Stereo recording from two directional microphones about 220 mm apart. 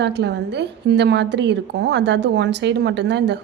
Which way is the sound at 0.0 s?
50° right (ahead or behind).